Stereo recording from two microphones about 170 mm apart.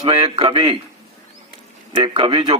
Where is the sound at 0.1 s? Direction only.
35° right (ahead or behind).